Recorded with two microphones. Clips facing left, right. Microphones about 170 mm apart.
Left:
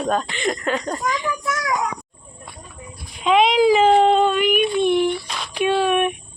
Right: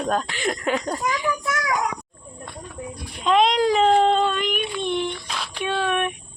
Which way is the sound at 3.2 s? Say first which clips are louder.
Left 3 dB; 5° left (ahead or behind).